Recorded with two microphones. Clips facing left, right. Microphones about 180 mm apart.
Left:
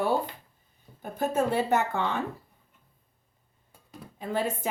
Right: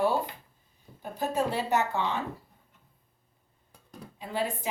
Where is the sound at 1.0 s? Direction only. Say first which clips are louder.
Left 2 dB; 55° left (ahead or behind).